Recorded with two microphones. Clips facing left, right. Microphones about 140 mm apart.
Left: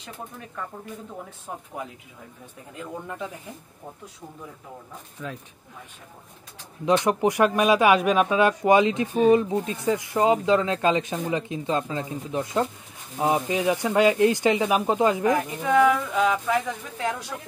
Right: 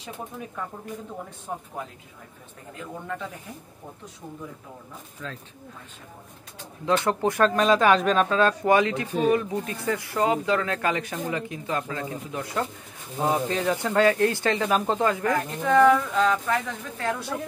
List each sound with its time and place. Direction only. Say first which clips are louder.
1.5 s speech: right 3 dB; 5° left (ahead or behind)
5.2 s speech: left 3 dB; 10° left (ahead or behind)
6.9 s speech: left 2 dB; 15° left (ahead or behind)